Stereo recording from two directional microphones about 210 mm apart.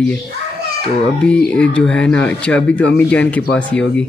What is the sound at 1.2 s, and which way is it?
Speech, 5° left (ahead or behind).